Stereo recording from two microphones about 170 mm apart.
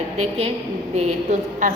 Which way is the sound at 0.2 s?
35° right (ahead or behind).